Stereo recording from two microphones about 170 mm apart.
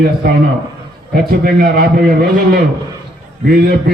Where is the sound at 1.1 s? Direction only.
65° right (ahead or behind).